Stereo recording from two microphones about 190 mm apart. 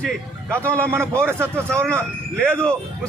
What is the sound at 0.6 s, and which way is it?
Speech, 10° left (ahead or behind).